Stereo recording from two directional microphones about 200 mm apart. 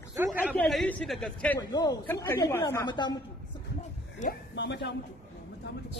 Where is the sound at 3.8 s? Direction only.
40° left (ahead or behind).